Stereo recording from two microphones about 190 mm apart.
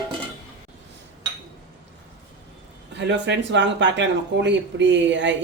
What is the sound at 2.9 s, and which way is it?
Speech, 65° right (ahead or behind).